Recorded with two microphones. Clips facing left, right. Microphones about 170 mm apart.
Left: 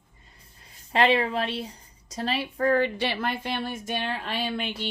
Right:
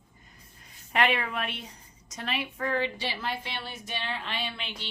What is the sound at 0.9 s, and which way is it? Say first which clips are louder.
A woman's voice: left 5 dB; 30° left (ahead or behind).